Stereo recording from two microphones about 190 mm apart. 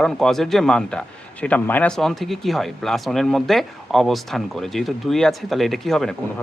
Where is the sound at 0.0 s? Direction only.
Centre (ahead or behind).